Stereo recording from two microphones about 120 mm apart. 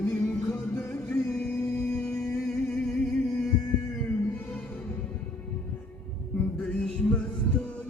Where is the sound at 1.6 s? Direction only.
25° left (ahead or behind).